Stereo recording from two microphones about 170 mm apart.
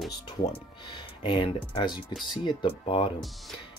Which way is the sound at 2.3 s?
25° left (ahead or behind).